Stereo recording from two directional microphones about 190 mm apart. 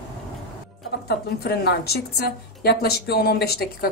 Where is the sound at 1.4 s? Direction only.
60° left (ahead or behind).